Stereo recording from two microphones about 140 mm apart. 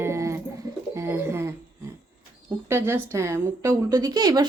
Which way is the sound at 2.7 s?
15° right (ahead or behind).